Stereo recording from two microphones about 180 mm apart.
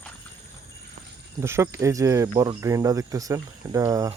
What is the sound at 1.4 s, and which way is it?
Speech, 15° right (ahead or behind).